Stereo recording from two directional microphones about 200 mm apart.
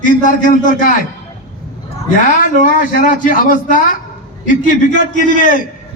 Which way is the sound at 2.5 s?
40° left (ahead or behind).